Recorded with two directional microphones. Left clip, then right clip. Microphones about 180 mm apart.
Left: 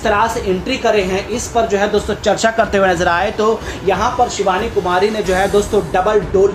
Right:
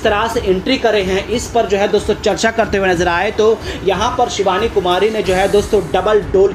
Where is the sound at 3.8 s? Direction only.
40° right (ahead or behind).